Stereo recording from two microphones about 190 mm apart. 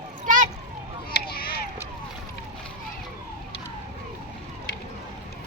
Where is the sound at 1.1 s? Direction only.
55° left (ahead or behind).